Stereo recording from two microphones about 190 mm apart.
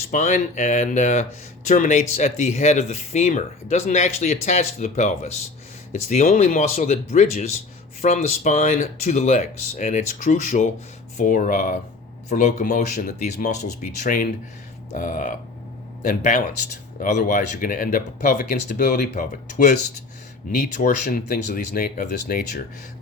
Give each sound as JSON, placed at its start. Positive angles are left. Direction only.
{"t": 0.1, "sound": "speech", "side_deg": 40}
{"t": 20.8, "sound": "speech", "side_deg": 50}